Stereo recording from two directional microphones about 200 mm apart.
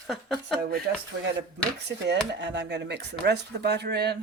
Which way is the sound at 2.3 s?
60° right (ahead or behind).